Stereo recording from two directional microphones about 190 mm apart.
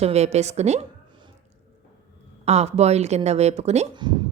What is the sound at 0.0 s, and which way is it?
Speech, 35° right (ahead or behind).